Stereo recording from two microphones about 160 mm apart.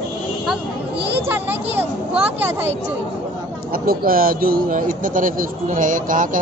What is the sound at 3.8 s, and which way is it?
Speech, 65° right (ahead or behind).